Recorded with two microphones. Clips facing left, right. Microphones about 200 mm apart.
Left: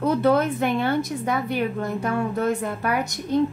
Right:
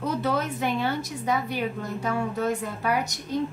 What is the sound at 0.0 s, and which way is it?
A woman's voice, 55° left (ahead or behind).